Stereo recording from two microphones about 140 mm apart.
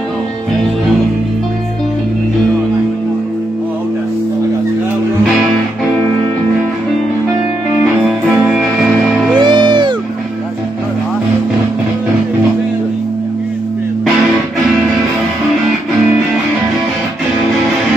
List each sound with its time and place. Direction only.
8.0 s music: centre (ahead or behind)
9.4 s music: 35° right (ahead or behind)